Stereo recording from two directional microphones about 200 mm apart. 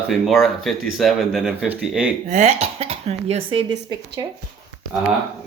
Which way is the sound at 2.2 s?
35° right (ahead or behind).